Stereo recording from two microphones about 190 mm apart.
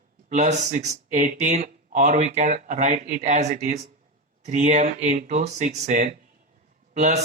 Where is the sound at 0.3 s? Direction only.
40° right (ahead or behind).